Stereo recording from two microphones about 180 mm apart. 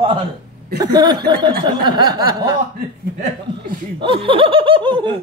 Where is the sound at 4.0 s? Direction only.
30° right (ahead or behind).